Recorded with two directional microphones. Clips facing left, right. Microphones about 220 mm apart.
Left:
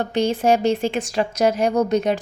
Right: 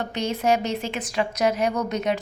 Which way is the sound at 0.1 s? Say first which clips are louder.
Left 5 dB; 30° left (ahead or behind).